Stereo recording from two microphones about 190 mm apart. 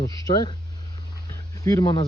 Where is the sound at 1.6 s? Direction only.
20° left (ahead or behind).